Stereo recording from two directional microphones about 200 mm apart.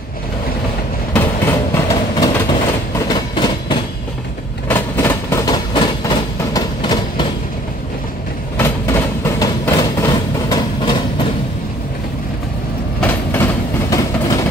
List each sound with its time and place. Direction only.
1.1 s vehicle: 15° left (ahead or behind)
3.0 s train: 20° left (ahead or behind)
4.6 s train: 10° left (ahead or behind)
8.5 s vehicle: 10° left (ahead or behind)
13.0 s train: 10° left (ahead or behind)